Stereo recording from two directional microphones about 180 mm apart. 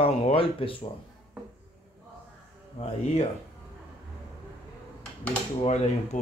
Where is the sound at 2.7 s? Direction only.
35° left (ahead or behind).